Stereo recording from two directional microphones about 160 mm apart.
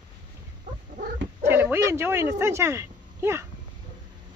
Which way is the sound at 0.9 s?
55° right (ahead or behind).